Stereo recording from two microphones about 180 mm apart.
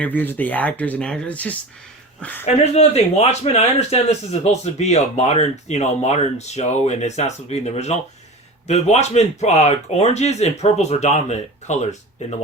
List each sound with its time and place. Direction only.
0.0 s speech: 10° left (ahead or behind)
2.4 s speech: 35° left (ahead or behind)